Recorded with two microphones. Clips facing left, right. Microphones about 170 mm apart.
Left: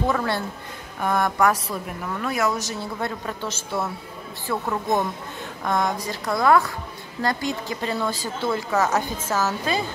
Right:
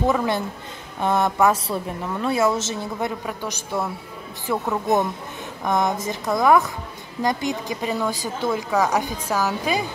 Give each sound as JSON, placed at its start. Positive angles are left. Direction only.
{"t": 0.0, "sound": "a woman's voice", "side_deg": -15}